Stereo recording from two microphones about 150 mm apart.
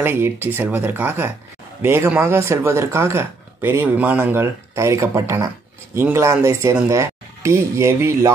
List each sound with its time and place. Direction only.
0.0 s speech: 15° right (ahead or behind)